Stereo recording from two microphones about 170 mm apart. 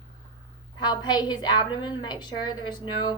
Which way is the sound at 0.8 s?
25° left (ahead or behind).